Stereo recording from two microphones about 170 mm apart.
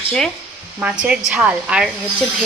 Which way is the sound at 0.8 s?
5° right (ahead or behind).